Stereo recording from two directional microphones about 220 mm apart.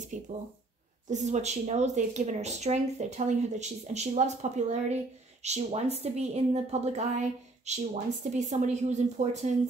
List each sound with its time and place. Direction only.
0.1 s a woman's voice: 35° right (ahead or behind)